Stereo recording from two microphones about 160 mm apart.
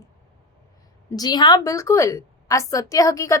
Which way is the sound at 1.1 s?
25° left (ahead or behind).